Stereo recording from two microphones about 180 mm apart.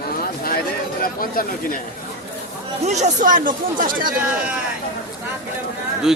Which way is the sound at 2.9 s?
40° right (ahead or behind).